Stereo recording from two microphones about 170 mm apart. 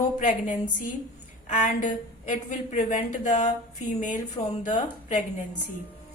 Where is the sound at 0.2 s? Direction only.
50° left (ahead or behind).